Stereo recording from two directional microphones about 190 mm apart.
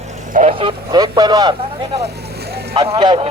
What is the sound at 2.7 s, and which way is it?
Speech, 25° right (ahead or behind).